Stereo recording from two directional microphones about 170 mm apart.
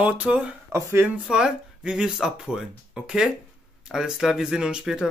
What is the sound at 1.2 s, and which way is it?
Speech, 5° right (ahead or behind).